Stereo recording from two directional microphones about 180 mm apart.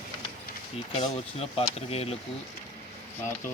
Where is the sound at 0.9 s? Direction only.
35° left (ahead or behind).